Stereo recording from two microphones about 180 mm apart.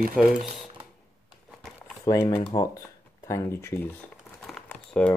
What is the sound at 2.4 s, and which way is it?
Speech, 25° left (ahead or behind).